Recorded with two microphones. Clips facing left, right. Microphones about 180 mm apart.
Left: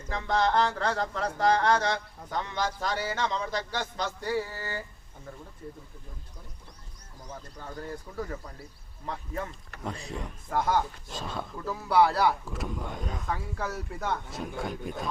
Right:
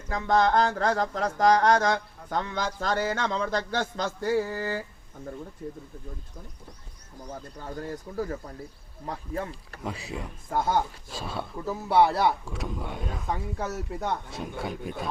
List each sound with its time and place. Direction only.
0.1 s a sound: 45° right (ahead or behind)
7.3 s speech: 40° right (ahead or behind)
9.8 s speech: 5° right (ahead or behind)
10.5 s speech: 30° right (ahead or behind)
11.1 s speech: 10° right (ahead or behind)
11.5 s speech: 25° right (ahead or behind)
12.5 s speech: centre (ahead or behind)
13.2 s speech: 20° right (ahead or behind)
14.3 s speech: centre (ahead or behind)